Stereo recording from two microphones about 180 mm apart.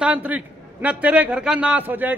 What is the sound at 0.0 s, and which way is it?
A man's voice, 5° right (ahead or behind).